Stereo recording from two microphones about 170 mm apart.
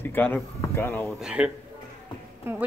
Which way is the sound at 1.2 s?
5° right (ahead or behind).